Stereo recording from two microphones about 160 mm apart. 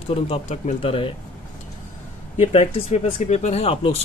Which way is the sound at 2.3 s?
45° left (ahead or behind).